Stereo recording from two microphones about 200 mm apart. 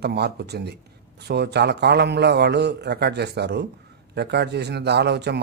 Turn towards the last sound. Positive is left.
turn(degrees=-55)  # may be behind; listen again after turning